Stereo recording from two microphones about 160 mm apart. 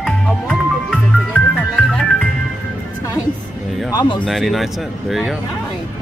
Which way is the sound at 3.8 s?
25° left (ahead or behind).